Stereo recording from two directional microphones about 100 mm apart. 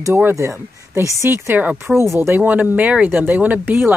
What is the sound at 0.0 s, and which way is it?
Speech, 25° right (ahead or behind).